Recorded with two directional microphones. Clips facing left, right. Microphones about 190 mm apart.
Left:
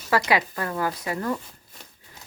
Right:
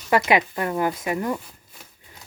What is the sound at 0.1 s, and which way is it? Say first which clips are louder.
Speech: right 3 dB; 20° right (ahead or behind).